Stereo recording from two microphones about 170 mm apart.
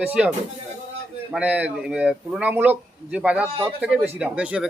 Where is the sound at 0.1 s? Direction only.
5° right (ahead or behind).